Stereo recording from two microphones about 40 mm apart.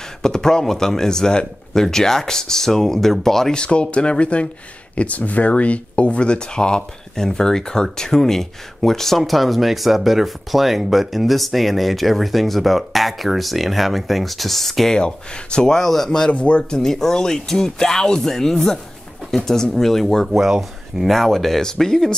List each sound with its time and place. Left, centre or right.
0.2 s speech: centre
3.5 s speech: left; by 15.0 s centre
15.0 s speech: left; by 16.1 s centre
16.3 s speech: left
16.7 s speech: centre
20.4 s speech: centre
21.2 s speech: centre